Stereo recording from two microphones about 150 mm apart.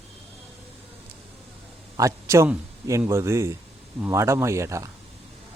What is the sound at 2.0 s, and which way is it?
A man's voice, 20° right (ahead or behind).